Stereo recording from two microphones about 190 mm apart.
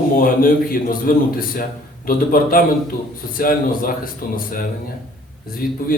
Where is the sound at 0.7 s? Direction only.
50° left (ahead or behind).